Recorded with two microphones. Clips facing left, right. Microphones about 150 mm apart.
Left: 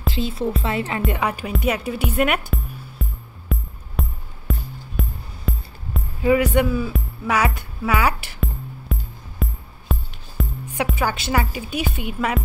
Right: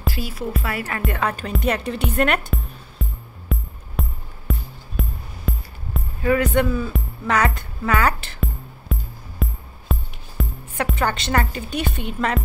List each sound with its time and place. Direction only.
0.1 s speech: 25° left (ahead or behind)
1.5 s music: 5° left (ahead or behind)
6.2 s speech: 10° left (ahead or behind)
8.4 s music: centre (ahead or behind)
10.9 s speech: 5° left (ahead or behind)